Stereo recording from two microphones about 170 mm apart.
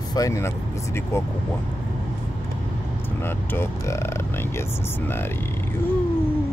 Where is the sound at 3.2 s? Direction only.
15° left (ahead or behind).